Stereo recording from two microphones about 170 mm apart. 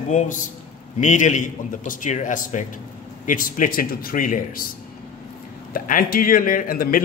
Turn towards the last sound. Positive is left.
turn(degrees=55)  # may be behind; listen again after turning